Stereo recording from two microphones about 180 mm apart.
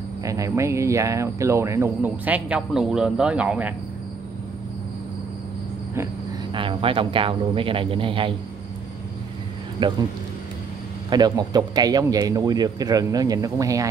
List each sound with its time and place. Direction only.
0.2 s speech: 20° right (ahead or behind)
6.5 s speech: 30° right (ahead or behind)
9.8 s a man's voice: 25° right (ahead or behind)
11.1 s speech: 20° right (ahead or behind)